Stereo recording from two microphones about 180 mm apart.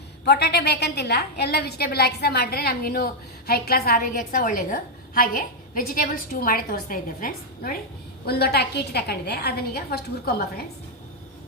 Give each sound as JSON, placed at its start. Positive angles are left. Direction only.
{"t": 0.3, "sound": "a woman's voice", "side_deg": 65}